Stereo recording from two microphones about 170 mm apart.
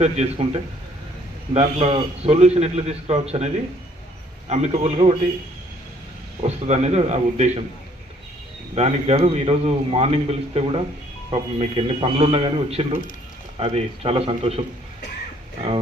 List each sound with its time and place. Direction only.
0.0 s a man's voice: 40° right (ahead or behind)
1.5 s a man's voice: 35° right (ahead or behind)
6.4 s a man's voice: 40° right (ahead or behind)
8.7 s a man's voice: 40° right (ahead or behind)